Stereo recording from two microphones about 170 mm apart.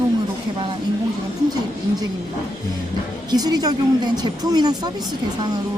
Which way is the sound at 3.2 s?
20° right (ahead or behind).